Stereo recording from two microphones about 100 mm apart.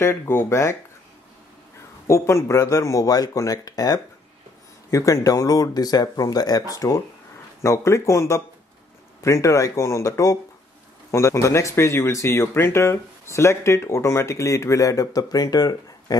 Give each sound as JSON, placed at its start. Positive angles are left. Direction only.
{"t": 0.0, "sound": "speech", "side_deg": 25}
{"t": 2.0, "sound": "speech", "side_deg": 30}